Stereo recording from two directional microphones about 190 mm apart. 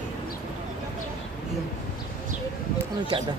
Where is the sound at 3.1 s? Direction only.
30° right (ahead or behind).